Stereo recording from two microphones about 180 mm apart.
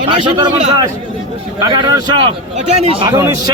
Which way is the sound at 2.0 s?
30° right (ahead or behind).